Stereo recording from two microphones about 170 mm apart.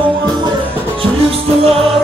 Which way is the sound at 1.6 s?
35° right (ahead or behind).